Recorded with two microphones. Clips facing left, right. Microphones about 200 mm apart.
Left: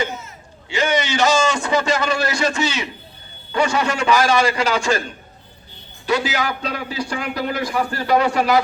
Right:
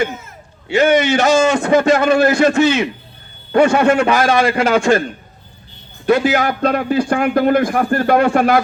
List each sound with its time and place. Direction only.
0.0 s a man's voice: 55° right (ahead or behind)
6.1 s a man's voice: 50° right (ahead or behind)